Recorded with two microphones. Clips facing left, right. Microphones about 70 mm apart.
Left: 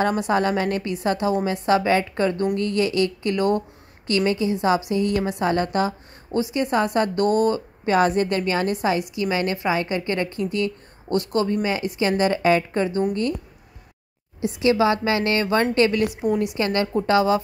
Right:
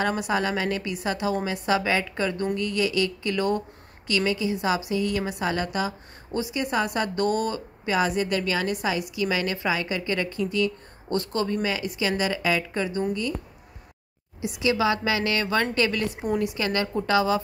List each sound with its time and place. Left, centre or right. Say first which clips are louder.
0.3 s a woman's voice: left 4 dB; left
6.3 s a woman's voice: left 4 dB; left
14.4 s a woman's voice: left 5 dB; left
16.2 s a woman's voice: left 3 dB; centre
16.5 s a woman's voice: left 4 dB; left